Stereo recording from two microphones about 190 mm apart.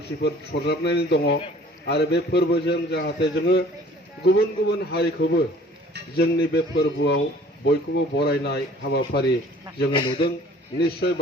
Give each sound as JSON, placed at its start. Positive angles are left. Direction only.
{"t": 0.2, "sound": "a man's voice", "side_deg": 60}
{"t": 9.7, "sound": "a man's voice", "side_deg": 25}
{"t": 10.8, "sound": "a man's voice", "side_deg": 60}